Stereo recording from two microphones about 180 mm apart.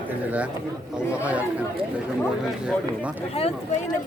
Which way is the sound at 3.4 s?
35° left (ahead or behind).